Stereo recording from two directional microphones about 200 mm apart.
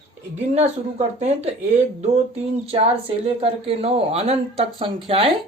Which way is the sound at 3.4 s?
30° right (ahead or behind).